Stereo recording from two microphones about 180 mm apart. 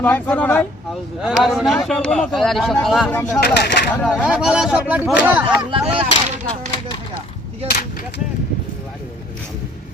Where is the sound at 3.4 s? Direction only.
65° left (ahead or behind).